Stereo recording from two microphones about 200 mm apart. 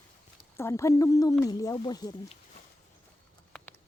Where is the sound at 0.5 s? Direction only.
15° left (ahead or behind).